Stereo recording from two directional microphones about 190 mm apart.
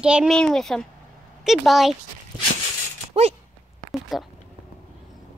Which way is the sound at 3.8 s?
Centre (ahead or behind).